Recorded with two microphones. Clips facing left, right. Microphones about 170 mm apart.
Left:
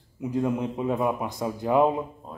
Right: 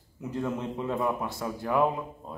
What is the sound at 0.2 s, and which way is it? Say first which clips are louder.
A man's voice: left 5 dB; 15° left (ahead or behind).